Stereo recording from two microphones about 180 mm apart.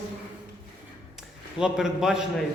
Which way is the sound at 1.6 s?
5° right (ahead or behind).